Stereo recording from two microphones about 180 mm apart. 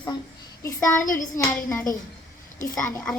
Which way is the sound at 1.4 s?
20° left (ahead or behind).